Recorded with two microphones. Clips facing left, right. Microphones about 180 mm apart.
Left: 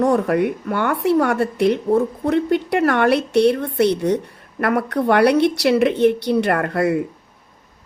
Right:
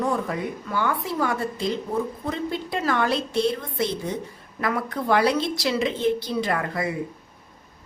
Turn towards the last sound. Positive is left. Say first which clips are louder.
# left 8 dB
turn(degrees=65)  # may be behind; listen again after turning